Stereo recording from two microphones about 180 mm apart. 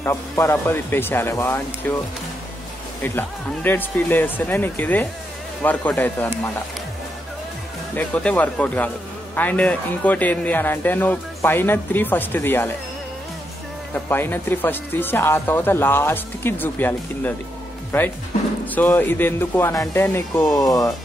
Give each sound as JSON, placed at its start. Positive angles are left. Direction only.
{"t": 0.0, "sound": "a man's voice", "side_deg": 15}
{"t": 3.0, "sound": "a man's voice", "side_deg": 10}
{"t": 7.9, "sound": "a man's voice", "side_deg": 10}
{"t": 13.9, "sound": "a man's voice", "side_deg": 10}
{"t": 18.8, "sound": "a man's voice", "side_deg": 10}